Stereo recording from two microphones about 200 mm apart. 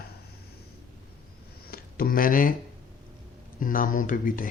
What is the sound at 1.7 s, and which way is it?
Speech, 45° left (ahead or behind).